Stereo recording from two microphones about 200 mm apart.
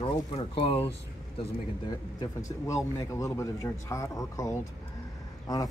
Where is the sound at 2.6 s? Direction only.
15° left (ahead or behind).